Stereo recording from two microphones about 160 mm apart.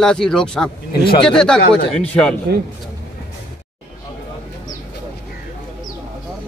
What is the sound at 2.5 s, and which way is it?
Speech, 75° right (ahead or behind).